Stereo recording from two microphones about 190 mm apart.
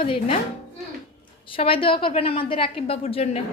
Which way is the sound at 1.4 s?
30° left (ahead or behind).